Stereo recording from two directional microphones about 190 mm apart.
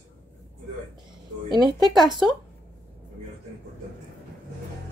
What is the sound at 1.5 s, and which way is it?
Speech, 20° right (ahead or behind).